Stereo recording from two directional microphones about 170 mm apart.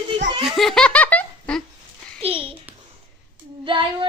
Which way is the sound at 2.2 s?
30° right (ahead or behind).